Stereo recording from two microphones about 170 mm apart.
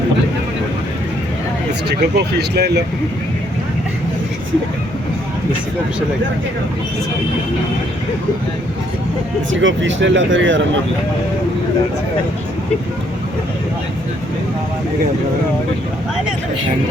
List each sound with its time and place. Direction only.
1.9 s speech: 75° right (ahead or behind)
9.5 s speech: 90° right